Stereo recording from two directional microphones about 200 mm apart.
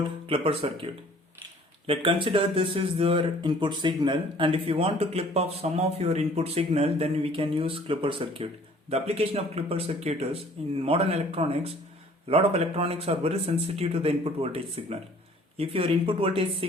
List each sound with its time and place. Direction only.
0.0 s speech: 25° right (ahead or behind)
1.9 s speech: 25° right (ahead or behind)